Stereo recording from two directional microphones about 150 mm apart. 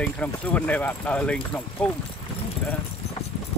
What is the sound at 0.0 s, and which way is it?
Speech, 10° left (ahead or behind).